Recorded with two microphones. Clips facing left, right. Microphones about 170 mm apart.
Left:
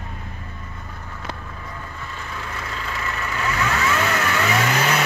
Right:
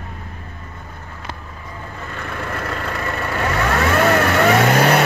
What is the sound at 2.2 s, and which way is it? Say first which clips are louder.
Vehicle: right 8 dB; 60° right (ahead or behind).